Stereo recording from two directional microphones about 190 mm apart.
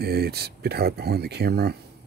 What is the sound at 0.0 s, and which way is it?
Speech, 55° right (ahead or behind).